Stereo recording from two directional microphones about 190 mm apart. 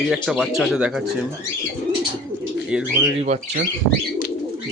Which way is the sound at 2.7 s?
10° right (ahead or behind).